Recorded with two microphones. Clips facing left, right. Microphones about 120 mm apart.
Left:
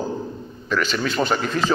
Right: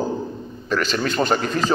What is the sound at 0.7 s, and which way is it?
Speech, 45° right (ahead or behind).